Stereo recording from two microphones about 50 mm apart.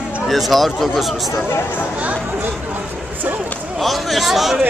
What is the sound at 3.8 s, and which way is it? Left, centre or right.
Speech, centre.